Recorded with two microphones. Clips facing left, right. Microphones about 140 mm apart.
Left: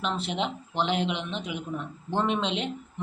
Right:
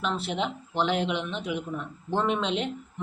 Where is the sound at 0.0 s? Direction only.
5° right (ahead or behind).